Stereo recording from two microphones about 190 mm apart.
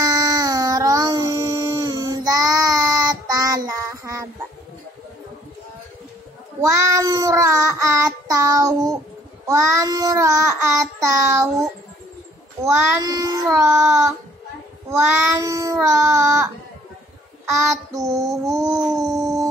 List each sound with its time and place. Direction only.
0.0 s child singing: 15° right (ahead or behind)
6.6 s child singing: 15° right (ahead or behind)
12.6 s child singing: 10° right (ahead or behind)
17.9 s child singing: 15° right (ahead or behind)